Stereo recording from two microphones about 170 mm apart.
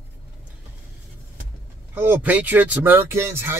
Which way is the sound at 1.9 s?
10° right (ahead or behind).